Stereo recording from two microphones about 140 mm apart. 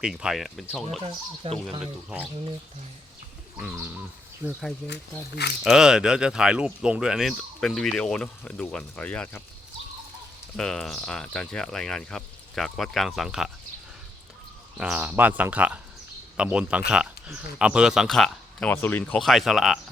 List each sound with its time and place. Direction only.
0.0 s speech: 5° right (ahead or behind)
1.4 s speech: 45° right (ahead or behind)
1.8 s speech: 5° right (ahead or behind)
4.4 s speech: 10° right (ahead or behind)
5.6 s speech: 5° right (ahead or behind)
10.6 s speech: 5° left (ahead or behind)
14.8 s speech: 5° right (ahead or behind)
18.7 s speech: 15° left (ahead or behind)
19.2 s speech: centre (ahead or behind)